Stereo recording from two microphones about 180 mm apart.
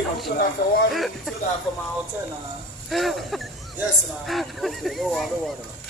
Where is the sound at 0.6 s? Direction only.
55° left (ahead or behind).